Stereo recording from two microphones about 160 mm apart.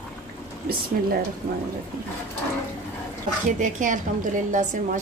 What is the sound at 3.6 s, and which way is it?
A woman's voice, 55° right (ahead or behind).